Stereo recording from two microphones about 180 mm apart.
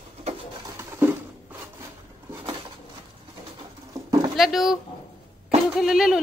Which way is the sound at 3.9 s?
25° right (ahead or behind).